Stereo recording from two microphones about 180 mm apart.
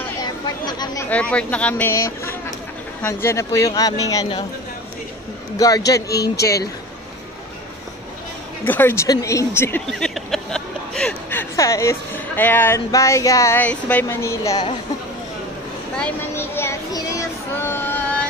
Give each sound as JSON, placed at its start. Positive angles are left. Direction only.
{"t": 0.2, "sound": "chatter", "side_deg": 20}
{"t": 1.0, "sound": "speech", "side_deg": 5}
{"t": 5.6, "sound": "speech", "side_deg": 20}
{"t": 6.4, "sound": "speech", "side_deg": 65}
{"t": 8.6, "sound": "speech", "side_deg": 10}
{"t": 16.0, "sound": "a sound", "side_deg": 10}
{"t": 17.6, "sound": "female singing", "side_deg": 10}